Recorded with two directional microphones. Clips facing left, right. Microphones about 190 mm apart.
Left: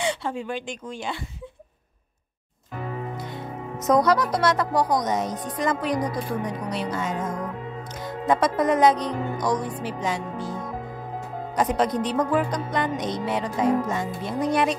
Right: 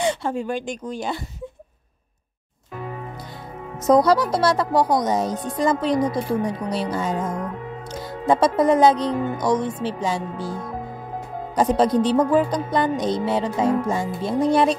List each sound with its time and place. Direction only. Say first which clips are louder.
0.0 s speech: right 4 dB; 45° right (ahead or behind)
3.8 s a woman's voice: right 4 dB; 30° right (ahead or behind)